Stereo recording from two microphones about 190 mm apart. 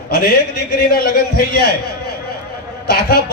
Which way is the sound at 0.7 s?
60° left (ahead or behind).